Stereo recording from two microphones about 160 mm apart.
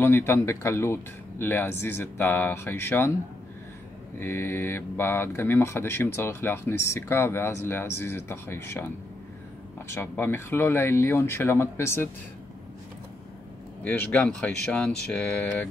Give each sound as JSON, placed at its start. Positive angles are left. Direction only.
{"t": 0.0, "sound": "speech", "side_deg": 15}
{"t": 4.2, "sound": "speech", "side_deg": 15}
{"t": 13.8, "sound": "speech", "side_deg": 10}